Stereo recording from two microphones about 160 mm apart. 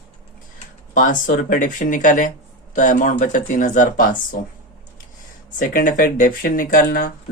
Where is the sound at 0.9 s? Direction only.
55° left (ahead or behind).